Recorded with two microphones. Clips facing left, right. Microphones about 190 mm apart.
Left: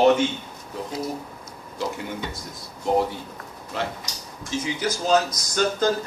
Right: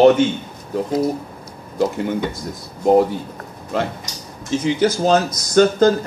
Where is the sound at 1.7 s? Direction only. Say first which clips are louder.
Right 10 dB; 50° right (ahead or behind).